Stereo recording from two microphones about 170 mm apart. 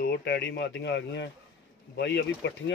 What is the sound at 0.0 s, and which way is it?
Speech, 80° left.